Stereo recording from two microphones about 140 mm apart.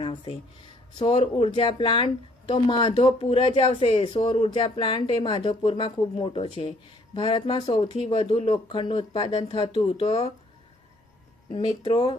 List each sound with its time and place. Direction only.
0.0 s a sound: 40° left (ahead or behind)
0.9 s speech: 40° left (ahead or behind)
11.5 s speech: 45° left (ahead or behind)